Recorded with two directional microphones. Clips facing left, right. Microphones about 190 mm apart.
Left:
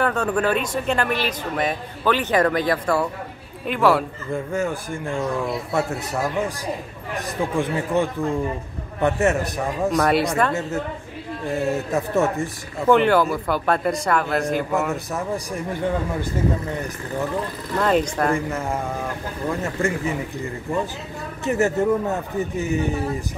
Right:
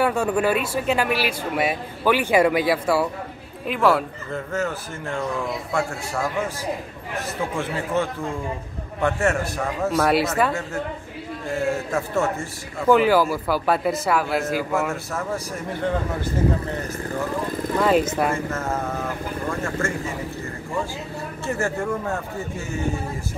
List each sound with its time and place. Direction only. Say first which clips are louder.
0.0 s a man's voice: right 1 dB; 10° right (ahead or behind)
4.3 s a man's voice: left 3 dB; 15° left (ahead or behind)
9.9 s a man's voice: even; centre (ahead or behind)
11.4 s a man's voice: left 1 dB; 20° left (ahead or behind)
12.8 s a man's voice: even; 5° right (ahead or behind)
15.1 s a man's voice: left 2 dB; 15° left (ahead or behind)
17.7 s a man's voice: even; 5° right (ahead or behind)
18.3 s a man's voice: left 2 dB; 15° left (ahead or behind)
21.5 s speech: left 6 dB; 20° left (ahead or behind)